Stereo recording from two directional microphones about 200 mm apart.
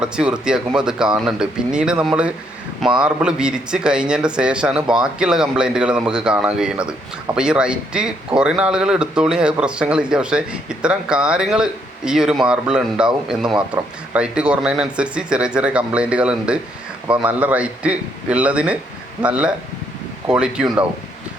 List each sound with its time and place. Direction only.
0.0 s speech: 5° right (ahead or behind)
14.1 s a man's voice: 5° right (ahead or behind)